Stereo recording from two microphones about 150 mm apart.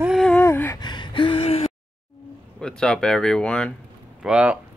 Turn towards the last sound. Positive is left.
turn(degrees=-10)  # may be behind; listen again after turning